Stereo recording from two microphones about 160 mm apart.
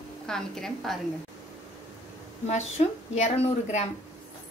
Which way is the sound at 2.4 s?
45° left (ahead or behind).